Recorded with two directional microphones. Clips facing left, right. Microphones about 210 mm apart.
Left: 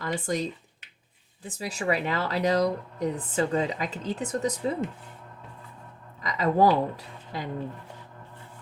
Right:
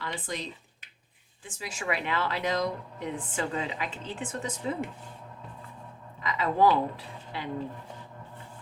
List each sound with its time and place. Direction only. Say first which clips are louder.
0.0 s speech: left 7 dB; 45° left (ahead or behind)
1.5 s speech: left 5 dB; 35° left (ahead or behind)
6.2 s speech: left 2 dB; 40° left (ahead or behind)